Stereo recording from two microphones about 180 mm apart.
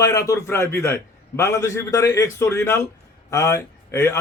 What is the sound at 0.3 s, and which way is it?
A man's voice, 15° left (ahead or behind).